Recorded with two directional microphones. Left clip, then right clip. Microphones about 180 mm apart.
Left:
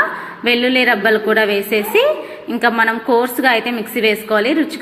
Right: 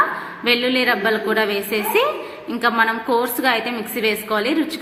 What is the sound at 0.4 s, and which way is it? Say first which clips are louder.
A woman's voice: left 4 dB; 20° left (ahead or behind).